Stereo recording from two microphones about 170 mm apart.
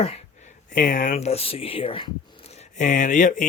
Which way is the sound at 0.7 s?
55° left (ahead or behind).